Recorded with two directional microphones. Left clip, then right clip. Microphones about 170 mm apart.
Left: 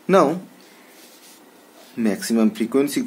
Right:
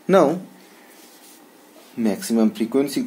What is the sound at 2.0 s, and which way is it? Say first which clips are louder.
Speech: even; 10° left (ahead or behind).